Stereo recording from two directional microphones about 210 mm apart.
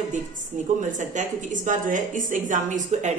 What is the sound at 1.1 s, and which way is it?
Speech, 35° right (ahead or behind).